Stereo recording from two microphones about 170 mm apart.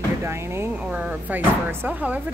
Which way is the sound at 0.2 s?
15° right (ahead or behind).